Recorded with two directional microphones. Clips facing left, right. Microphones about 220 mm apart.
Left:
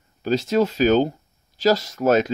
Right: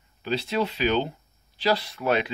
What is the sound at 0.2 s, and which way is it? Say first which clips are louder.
Speech: left 7 dB; 45° left (ahead or behind).